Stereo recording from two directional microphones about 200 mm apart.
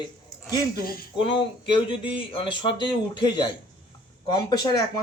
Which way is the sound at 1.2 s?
25° left (ahead or behind).